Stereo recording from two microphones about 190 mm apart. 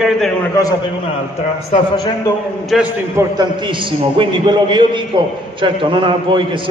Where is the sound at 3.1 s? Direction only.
20° right (ahead or behind).